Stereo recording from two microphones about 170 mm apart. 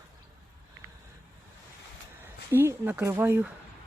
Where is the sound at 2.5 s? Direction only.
10° right (ahead or behind).